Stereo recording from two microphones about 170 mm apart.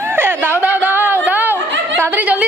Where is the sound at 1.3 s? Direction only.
10° right (ahead or behind).